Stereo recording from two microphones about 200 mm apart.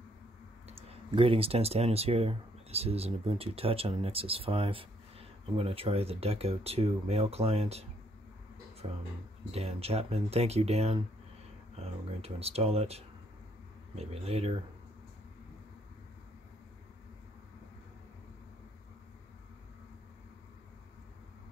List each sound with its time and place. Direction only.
0.7 s speech: 30° right (ahead or behind)
8.8 s speech: 25° right (ahead or behind)